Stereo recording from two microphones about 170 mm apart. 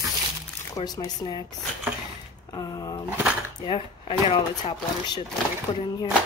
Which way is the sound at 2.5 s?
20° left (ahead or behind).